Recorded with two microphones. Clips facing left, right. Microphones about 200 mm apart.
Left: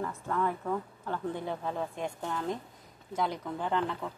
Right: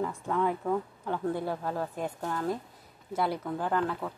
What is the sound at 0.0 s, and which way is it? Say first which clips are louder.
Speech: right 3 dB; 10° right (ahead or behind).